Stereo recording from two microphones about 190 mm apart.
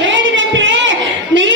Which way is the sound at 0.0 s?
80° right.